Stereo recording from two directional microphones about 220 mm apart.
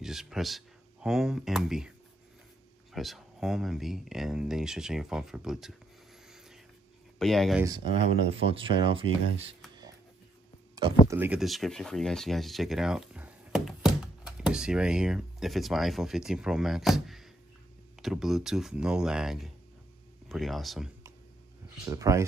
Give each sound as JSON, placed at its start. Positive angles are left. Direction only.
{"t": 0.0, "sound": "speech", "side_deg": 0}
{"t": 2.9, "sound": "speech", "side_deg": 0}
{"t": 7.2, "sound": "speech", "side_deg": 0}
{"t": 7.6, "sound": "speech", "side_deg": -20}
{"t": 11.1, "sound": "speech", "side_deg": -10}
{"t": 21.8, "sound": "speech", "side_deg": -15}